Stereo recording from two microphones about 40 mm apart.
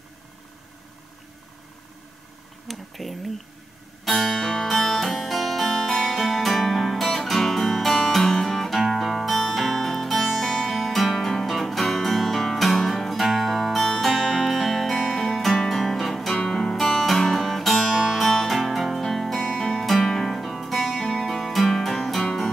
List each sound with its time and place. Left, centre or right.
2.7 s speech: centre
4.0 s music: centre